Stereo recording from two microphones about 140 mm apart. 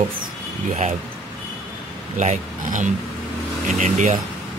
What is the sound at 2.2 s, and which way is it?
Speech, 60° right (ahead or behind).